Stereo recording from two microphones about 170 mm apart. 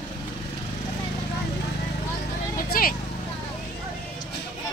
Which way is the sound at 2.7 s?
60° left (ahead or behind).